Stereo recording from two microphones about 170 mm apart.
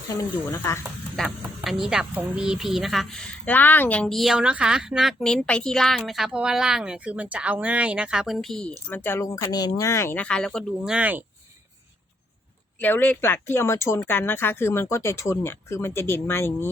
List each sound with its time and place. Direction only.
0.1 s speech: 15° left (ahead or behind)
1.1 s speech: centre (ahead or behind)
12.8 s speech: 10° left (ahead or behind)